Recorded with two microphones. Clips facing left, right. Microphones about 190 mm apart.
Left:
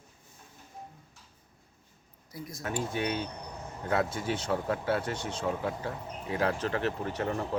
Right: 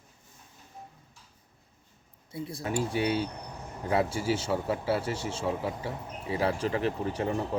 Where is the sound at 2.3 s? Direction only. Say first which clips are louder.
Right 5 dB; 30° right (ahead or behind).